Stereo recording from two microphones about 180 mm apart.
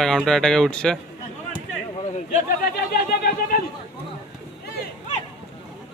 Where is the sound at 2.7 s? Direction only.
60° left (ahead or behind).